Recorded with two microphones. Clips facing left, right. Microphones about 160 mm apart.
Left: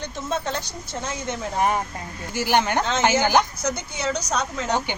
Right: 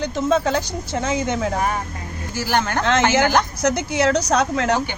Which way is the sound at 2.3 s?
15° left (ahead or behind).